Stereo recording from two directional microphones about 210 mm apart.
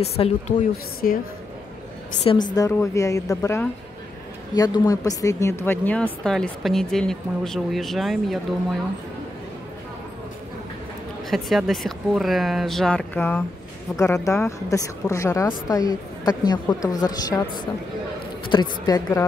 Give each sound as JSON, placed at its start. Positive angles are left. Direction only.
{"t": 0.0, "sound": "a woman's voice", "side_deg": 30}
{"t": 1.0, "sound": "a woman's voice", "side_deg": 40}
{"t": 2.2, "sound": "a woman's voice", "side_deg": 20}
{"t": 11.2, "sound": "a woman's voice", "side_deg": 0}
{"t": 18.5, "sound": "a woman's voice", "side_deg": 20}